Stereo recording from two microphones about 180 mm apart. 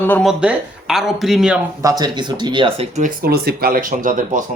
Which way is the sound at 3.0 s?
60° right (ahead or behind).